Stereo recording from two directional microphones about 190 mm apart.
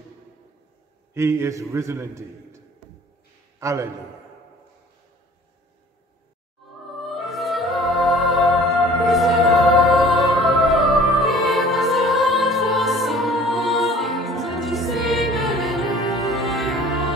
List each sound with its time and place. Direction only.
1.1 s a man's voice: 15° right (ahead or behind)
3.5 s a man's voice: 15° right (ahead or behind)
6.9 s music: centre (ahead or behind)